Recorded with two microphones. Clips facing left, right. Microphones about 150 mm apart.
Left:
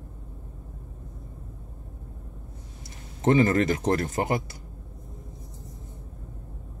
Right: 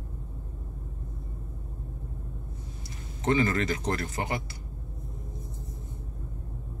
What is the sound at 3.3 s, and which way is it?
A man's voice, 45° left (ahead or behind).